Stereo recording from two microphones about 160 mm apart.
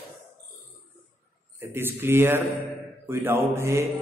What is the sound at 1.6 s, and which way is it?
A man's voice, 15° right (ahead or behind).